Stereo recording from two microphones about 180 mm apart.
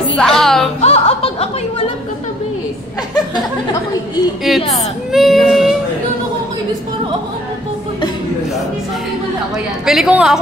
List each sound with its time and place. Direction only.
0.2 s music: 5° left (ahead or behind)
0.7 s music: 35° left (ahead or behind)
4.5 s a woman's voice: centre (ahead or behind)
5.1 s female singing: centre (ahead or behind)
9.8 s a woman's voice: 5° right (ahead or behind)